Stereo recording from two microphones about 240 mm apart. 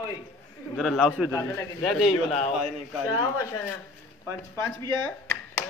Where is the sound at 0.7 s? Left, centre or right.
Centre.